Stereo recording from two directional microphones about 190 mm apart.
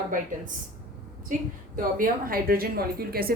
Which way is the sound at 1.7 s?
50° right (ahead or behind).